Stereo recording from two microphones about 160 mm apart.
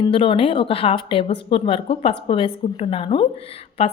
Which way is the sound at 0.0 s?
30° left (ahead or behind).